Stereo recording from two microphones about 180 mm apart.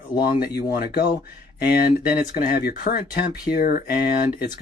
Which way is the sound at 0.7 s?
60° left (ahead or behind).